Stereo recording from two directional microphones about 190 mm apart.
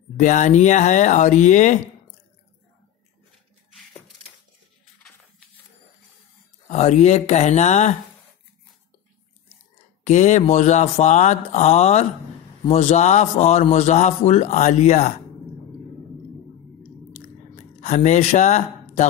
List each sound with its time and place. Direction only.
0.2 s a man's voice: 40° left (ahead or behind)
6.7 s a man's voice: 35° left (ahead or behind)
10.0 s a man's voice: 40° left (ahead or behind)
17.6 s speech: 40° left (ahead or behind)